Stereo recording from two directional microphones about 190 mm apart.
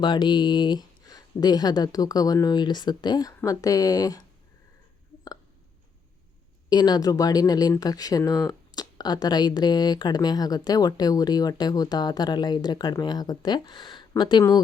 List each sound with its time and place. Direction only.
0.0 s speech: 25° left (ahead or behind)
6.7 s speech: 20° left (ahead or behind)